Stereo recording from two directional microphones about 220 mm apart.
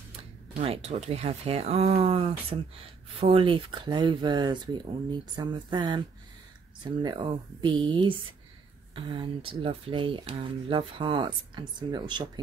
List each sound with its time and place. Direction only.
0.6 s speech: 30° right (ahead or behind)